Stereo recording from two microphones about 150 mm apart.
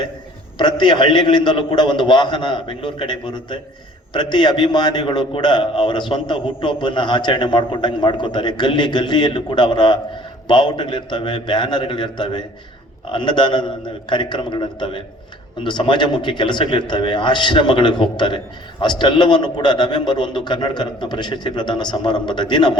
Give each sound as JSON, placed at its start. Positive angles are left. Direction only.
{"t": 0.6, "sound": "a man's voice", "side_deg": 30}